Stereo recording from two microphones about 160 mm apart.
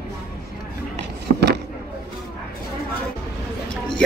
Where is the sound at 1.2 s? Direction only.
90° right.